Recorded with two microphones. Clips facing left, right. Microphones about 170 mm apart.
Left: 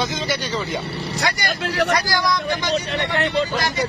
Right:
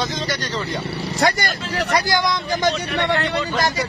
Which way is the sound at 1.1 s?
50° right (ahead or behind).